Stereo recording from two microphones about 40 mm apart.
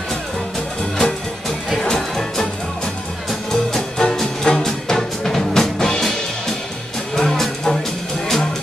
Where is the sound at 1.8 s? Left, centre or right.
Centre.